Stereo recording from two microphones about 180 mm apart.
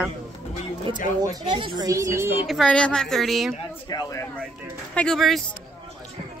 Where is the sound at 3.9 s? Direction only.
20° left (ahead or behind).